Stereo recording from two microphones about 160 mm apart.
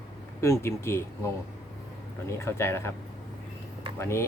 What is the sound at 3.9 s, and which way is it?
Speech, 15° left (ahead or behind).